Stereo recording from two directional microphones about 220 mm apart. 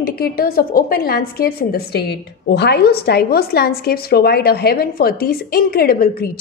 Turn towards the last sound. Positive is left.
turn(degrees=40)  # may be behind; listen again after turning